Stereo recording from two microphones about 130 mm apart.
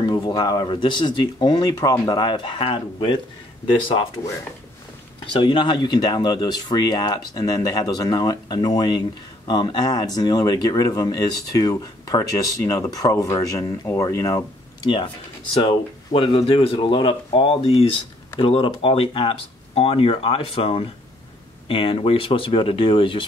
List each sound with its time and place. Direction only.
0.0 s speech: 30° left (ahead or behind)
5.2 s speech: 40° left (ahead or behind)
15.5 s speech: 45° left (ahead or behind)